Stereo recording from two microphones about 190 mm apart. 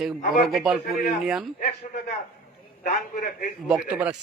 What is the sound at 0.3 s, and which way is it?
A man's voice, centre (ahead or behind).